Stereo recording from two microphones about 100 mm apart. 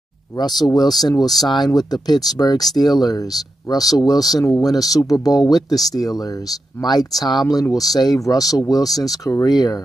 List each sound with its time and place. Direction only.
0.7 s speech: 40° left (ahead or behind)